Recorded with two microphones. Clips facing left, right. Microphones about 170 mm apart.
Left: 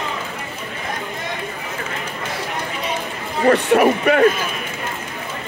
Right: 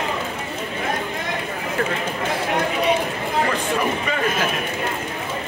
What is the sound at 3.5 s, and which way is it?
Speech, 65° left (ahead or behind).